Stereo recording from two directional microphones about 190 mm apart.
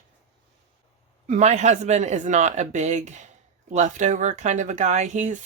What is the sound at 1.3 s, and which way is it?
Speech, 35° right (ahead or behind).